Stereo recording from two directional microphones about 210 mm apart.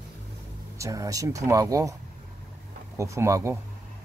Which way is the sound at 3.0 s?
15° right (ahead or behind).